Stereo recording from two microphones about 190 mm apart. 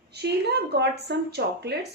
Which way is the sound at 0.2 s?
60° right (ahead or behind).